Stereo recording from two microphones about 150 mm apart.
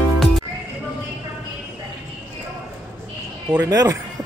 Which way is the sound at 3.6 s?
25° right (ahead or behind).